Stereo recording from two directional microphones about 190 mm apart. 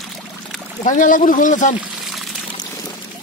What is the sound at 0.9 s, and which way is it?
Speech, 45° left (ahead or behind).